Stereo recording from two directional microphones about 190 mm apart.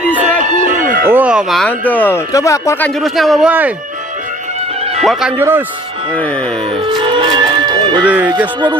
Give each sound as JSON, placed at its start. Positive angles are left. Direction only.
{"t": 0.2, "sound": "a sound", "side_deg": -40}
{"t": 1.0, "sound": "speech", "side_deg": -10}
{"t": 5.4, "sound": "speech", "side_deg": -10}
{"t": 6.1, "sound": "speech", "side_deg": 5}
{"t": 6.7, "sound": "music", "side_deg": -25}
{"t": 8.0, "sound": "speech", "side_deg": -10}